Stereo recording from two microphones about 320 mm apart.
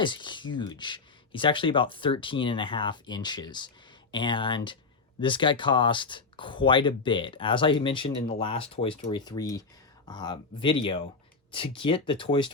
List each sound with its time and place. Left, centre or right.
0.0 s speech: centre